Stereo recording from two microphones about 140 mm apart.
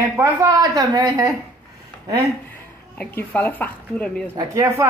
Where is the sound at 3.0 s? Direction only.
10° left (ahead or behind).